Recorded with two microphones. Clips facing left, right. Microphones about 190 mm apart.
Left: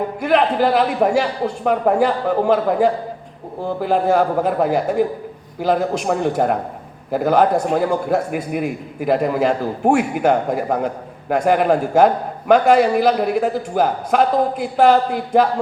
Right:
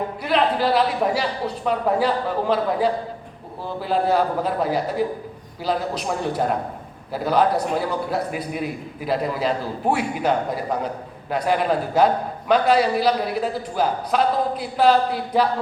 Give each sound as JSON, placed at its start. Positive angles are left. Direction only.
{"t": 0.2, "sound": "a man's voice", "side_deg": 55}